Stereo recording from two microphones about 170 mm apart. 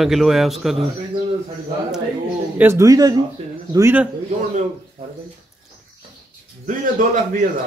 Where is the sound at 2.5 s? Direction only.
15° right (ahead or behind).